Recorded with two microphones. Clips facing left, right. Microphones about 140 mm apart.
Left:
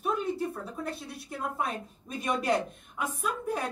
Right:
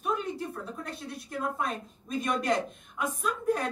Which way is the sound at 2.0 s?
10° left (ahead or behind).